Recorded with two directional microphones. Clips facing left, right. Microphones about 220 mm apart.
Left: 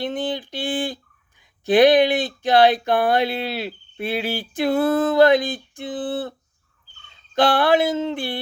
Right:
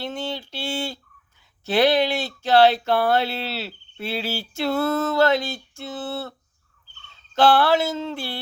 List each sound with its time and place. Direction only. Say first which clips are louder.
0.0 s speech: left 4 dB; 15° left (ahead or behind)
7.3 s speech: left 1 dB; 15° left (ahead or behind)